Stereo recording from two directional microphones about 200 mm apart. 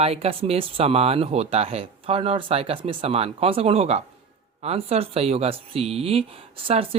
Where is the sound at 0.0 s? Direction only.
30° right (ahead or behind).